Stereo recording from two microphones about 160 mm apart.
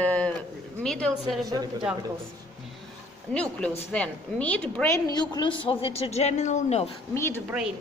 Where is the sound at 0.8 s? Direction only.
5° left (ahead or behind).